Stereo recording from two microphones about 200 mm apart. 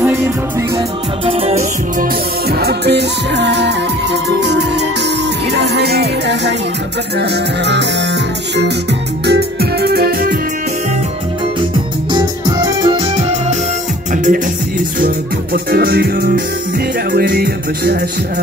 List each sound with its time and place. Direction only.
0.0 s music: 10° right (ahead or behind)
1.2 s music: 30° right (ahead or behind)
2.6 s music: 55° right (ahead or behind)
9.2 s music: 55° right (ahead or behind)
12.1 s music: 20° right (ahead or behind)
14.1 s music: 40° right (ahead or behind)